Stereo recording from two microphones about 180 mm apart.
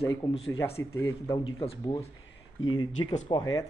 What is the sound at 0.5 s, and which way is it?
Speech, 15° left (ahead or behind).